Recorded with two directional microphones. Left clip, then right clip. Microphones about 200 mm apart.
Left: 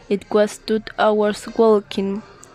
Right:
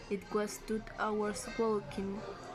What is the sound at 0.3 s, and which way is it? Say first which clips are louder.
Speech: left 19 dB; 50° left (ahead or behind).